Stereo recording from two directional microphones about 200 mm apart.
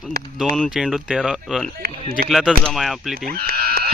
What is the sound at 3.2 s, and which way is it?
Sheep, 50° right (ahead or behind).